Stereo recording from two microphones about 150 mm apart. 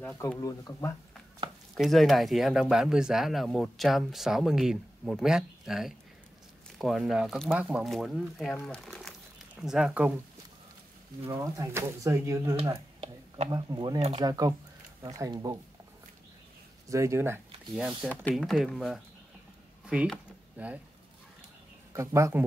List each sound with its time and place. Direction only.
0.0 s speech: 10° left (ahead or behind)
0.4 s speech: 20° left (ahead or behind)
1.8 s speech: centre (ahead or behind)
11.2 s speech: 20° right (ahead or behind)
12.7 s a sound: 40° right (ahead or behind)
13.5 s speech: 25° right (ahead or behind)
16.9 s speech: 20° right (ahead or behind)
18.0 s speech: 10° left (ahead or behind)
18.3 s speech: centre (ahead or behind)
19.9 s a sound: 5° right (ahead or behind)
21.9 s speech: 20° right (ahead or behind)